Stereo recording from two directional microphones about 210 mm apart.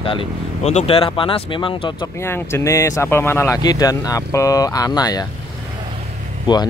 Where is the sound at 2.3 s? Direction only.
10° left (ahead or behind).